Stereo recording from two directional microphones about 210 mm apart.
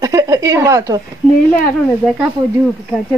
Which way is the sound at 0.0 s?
15° right (ahead or behind).